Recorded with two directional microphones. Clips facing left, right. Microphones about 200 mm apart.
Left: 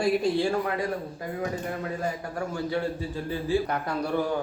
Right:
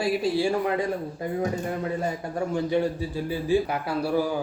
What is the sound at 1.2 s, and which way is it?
Speech, 25° right (ahead or behind).